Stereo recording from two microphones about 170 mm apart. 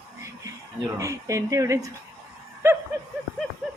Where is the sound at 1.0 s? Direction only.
20° right (ahead or behind).